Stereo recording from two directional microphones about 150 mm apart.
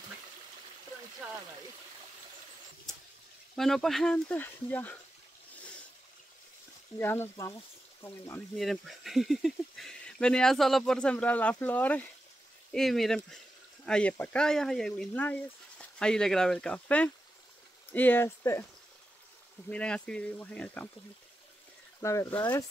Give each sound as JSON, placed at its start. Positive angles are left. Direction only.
{"t": 3.5, "sound": "speech", "side_deg": 0}
{"t": 7.0, "sound": "speech", "side_deg": 15}
{"t": 8.5, "sound": "speech", "side_deg": 0}
{"t": 19.7, "sound": "speech", "side_deg": 5}
{"t": 22.0, "sound": "speech", "side_deg": 20}